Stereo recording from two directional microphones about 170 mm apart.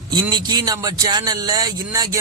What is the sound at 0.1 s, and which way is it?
Speech, 25° right (ahead or behind).